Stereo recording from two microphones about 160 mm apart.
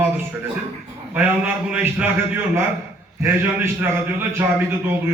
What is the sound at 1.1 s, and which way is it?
A man's voice, 10° right (ahead or behind).